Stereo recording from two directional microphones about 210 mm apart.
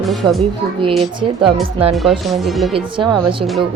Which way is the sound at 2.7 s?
20° right (ahead or behind).